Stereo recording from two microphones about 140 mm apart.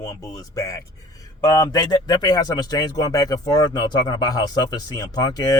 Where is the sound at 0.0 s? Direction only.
25° left (ahead or behind).